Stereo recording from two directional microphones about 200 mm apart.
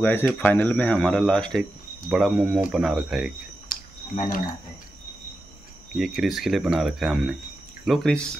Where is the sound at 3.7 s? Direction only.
45° left (ahead or behind).